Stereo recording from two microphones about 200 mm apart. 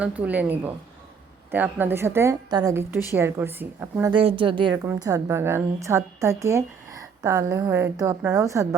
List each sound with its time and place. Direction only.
0.0 s a woman's voice: 5° right (ahead or behind)
4.1 s a woman's voice: 25° right (ahead or behind)